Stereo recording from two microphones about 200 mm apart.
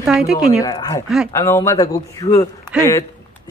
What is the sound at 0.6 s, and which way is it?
Speech, 15° left (ahead or behind).